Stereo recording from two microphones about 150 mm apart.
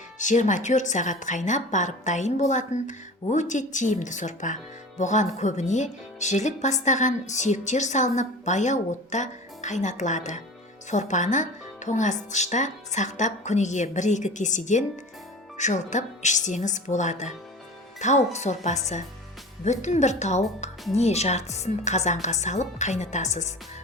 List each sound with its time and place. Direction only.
0.2 s a woman's voice: 55° left (ahead or behind)